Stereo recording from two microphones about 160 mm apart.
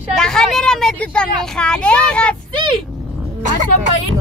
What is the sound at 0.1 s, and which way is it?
Speech, 5° left (ahead or behind).